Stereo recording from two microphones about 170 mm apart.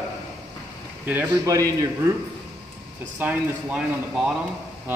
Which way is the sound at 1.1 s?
10° right (ahead or behind).